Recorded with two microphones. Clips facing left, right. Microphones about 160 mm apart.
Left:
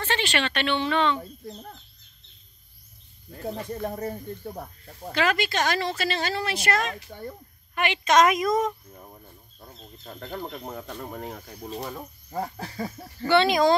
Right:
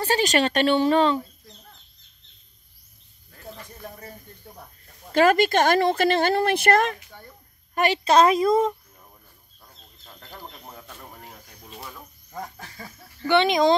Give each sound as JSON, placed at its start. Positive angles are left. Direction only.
{"t": 0.0, "sound": "speech", "side_deg": -40}
{"t": 1.5, "sound": "speech", "side_deg": 45}
{"t": 3.3, "sound": "cricket", "side_deg": 35}
{"t": 3.5, "sound": "speech", "side_deg": 55}
{"t": 5.1, "sound": "speech", "side_deg": -45}
{"t": 7.1, "sound": "speech", "side_deg": 55}
{"t": 7.7, "sound": "a woman's voice", "side_deg": -40}
{"t": 10.3, "sound": "speech", "side_deg": 55}
{"t": 11.7, "sound": "speech", "side_deg": 40}
{"t": 13.3, "sound": "speech", "side_deg": -20}